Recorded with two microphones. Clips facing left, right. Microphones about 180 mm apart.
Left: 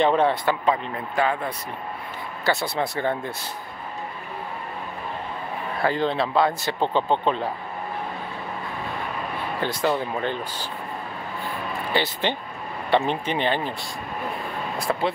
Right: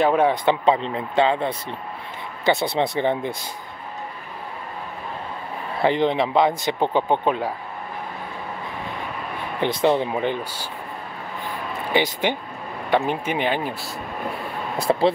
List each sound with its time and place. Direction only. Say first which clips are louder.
0.0 s speech: right 1 dB; 10° right (ahead or behind)
0.5 s speech: right 4 dB; 30° right (ahead or behind)
5.8 s speech: right 4 dB; 20° right (ahead or behind)
9.6 s speech: right 5 dB; 20° right (ahead or behind)
11.9 s speech: right 4 dB; 15° right (ahead or behind)
14.9 s speech: right 6 dB; 30° right (ahead or behind)